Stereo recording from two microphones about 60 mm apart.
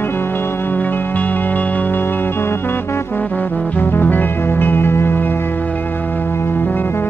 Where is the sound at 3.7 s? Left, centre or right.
Left.